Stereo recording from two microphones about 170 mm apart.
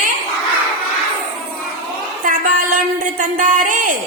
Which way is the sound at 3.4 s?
50° right (ahead or behind).